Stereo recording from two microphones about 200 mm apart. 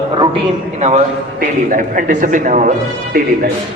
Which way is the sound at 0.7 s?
35° right (ahead or behind).